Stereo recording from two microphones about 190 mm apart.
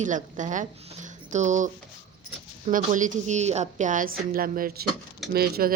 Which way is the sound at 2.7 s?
45° right (ahead or behind).